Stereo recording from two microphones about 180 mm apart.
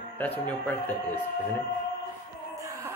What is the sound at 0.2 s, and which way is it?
Speech, 10° left (ahead or behind).